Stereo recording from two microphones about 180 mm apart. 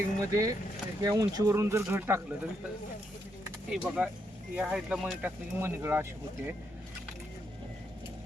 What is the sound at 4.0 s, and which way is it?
Speech, 10° right (ahead or behind).